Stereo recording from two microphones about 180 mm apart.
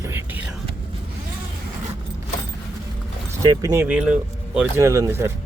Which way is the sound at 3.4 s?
20° right (ahead or behind).